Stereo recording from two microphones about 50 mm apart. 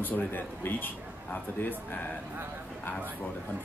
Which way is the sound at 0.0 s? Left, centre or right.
Left.